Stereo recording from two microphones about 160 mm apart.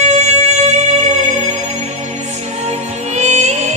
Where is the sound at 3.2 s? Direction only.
45° right (ahead or behind).